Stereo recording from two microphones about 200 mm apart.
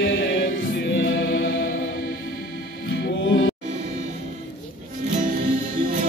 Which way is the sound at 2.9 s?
60° left (ahead or behind).